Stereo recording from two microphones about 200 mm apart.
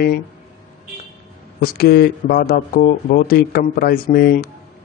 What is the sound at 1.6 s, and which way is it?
A man's voice, 50° left (ahead or behind).